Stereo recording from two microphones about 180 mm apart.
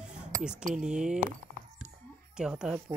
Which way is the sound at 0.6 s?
45° right (ahead or behind).